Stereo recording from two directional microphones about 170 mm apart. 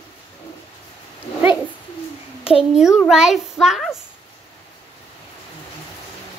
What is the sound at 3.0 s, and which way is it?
A child's voice, centre (ahead or behind).